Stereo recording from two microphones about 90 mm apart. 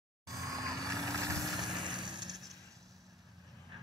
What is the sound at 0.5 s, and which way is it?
Vehicle, 40° right (ahead or behind).